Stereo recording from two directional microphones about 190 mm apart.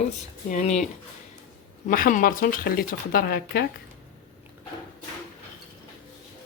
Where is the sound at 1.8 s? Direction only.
45° left (ahead or behind).